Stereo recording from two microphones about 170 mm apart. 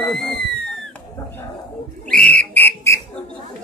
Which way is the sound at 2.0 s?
5° left (ahead or behind).